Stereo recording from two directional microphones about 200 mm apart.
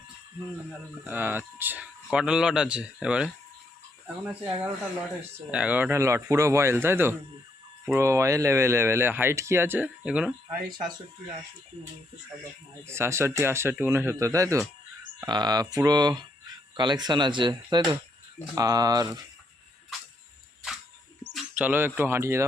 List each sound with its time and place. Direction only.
1.0 s speech: 10° right (ahead or behind)
10.7 s speech: 20° right (ahead or behind)
12.9 s speech: 15° right (ahead or behind)
21.3 s speech: 5° right (ahead or behind)